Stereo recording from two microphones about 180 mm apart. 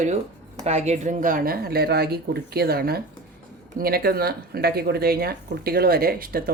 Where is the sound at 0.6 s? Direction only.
35° right (ahead or behind).